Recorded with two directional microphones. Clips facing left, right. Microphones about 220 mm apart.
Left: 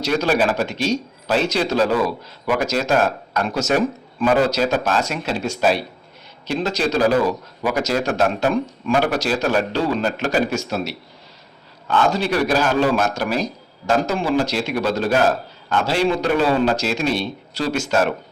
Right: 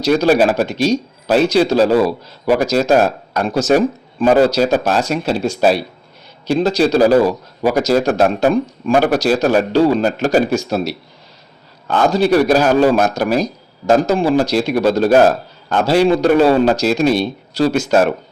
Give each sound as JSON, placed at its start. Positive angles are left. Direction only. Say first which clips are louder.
{"t": 0.0, "sound": "speech", "louder": "right 6 dB", "side_deg": -35}